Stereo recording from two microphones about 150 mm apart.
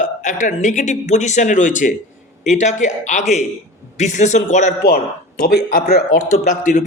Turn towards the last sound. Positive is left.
turn(degrees=65)  # may be behind; listen again after turning